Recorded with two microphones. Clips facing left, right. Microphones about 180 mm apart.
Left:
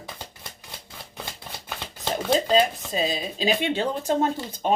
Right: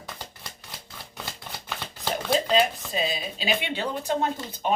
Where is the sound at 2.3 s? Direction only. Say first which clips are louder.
Left 2 dB; 35° left (ahead or behind).